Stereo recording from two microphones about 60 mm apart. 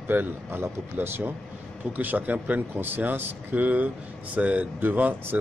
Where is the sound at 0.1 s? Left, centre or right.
Right.